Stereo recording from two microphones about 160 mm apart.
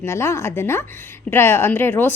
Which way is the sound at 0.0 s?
15° left (ahead or behind).